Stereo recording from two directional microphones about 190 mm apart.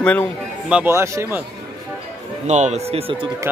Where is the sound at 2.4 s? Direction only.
35° right (ahead or behind).